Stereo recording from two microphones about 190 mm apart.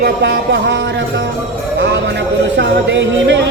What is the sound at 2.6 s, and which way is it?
Music, 70° right (ahead or behind).